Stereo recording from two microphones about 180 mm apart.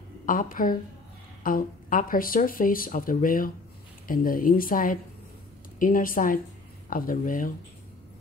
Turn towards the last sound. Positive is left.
turn(degrees=50)  # may be behind; listen again after turning